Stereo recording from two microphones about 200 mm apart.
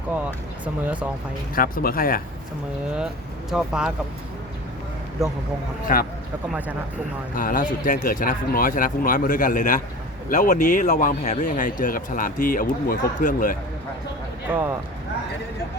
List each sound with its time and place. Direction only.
0.3 s speech: 5° right (ahead or behind)
1.5 s speech: 45° left (ahead or behind)
3.5 s speech: 5° right (ahead or behind)
5.9 s speech: 45° left (ahead or behind)
7.3 s speech: 45° left (ahead or behind)
14.5 s speech: 10° right (ahead or behind)